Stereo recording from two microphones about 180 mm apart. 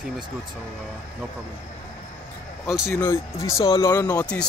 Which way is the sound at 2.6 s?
Centre (ahead or behind).